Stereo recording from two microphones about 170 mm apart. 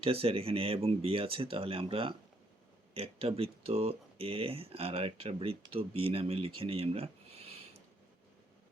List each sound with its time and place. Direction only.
0.0 s speech: 35° right (ahead or behind)